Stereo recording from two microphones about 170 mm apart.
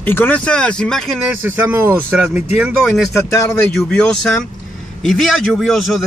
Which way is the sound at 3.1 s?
15° left (ahead or behind).